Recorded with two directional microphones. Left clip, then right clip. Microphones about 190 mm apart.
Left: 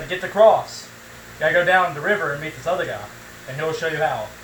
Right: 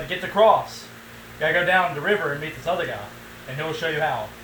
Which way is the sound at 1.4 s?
10° left (ahead or behind).